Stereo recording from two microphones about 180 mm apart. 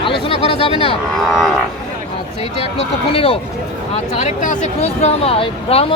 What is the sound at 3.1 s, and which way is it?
Speech, 30° left (ahead or behind).